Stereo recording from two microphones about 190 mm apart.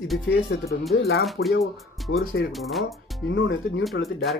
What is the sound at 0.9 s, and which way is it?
Speech, 55° left (ahead or behind).